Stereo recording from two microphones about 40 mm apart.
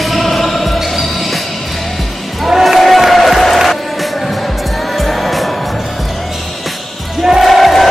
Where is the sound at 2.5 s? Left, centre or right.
Centre.